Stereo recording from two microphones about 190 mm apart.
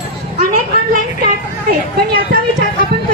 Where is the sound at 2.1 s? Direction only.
50° right (ahead or behind).